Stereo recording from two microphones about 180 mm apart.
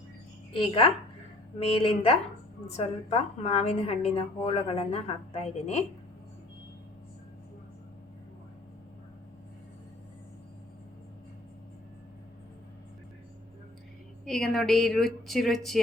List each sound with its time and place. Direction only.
0.6 s a woman's voice: 30° left (ahead or behind)
14.3 s speech: centre (ahead or behind)